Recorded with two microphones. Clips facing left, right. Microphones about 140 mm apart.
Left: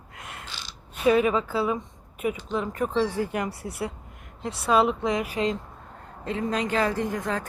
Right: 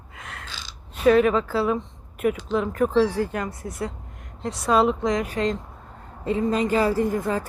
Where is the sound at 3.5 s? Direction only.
70° left (ahead or behind).